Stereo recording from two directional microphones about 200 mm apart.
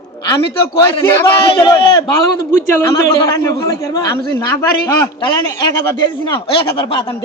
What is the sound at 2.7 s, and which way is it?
A man's voice, 15° left (ahead or behind).